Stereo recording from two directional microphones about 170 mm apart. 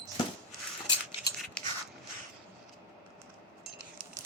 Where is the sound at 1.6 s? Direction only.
5° left (ahead or behind).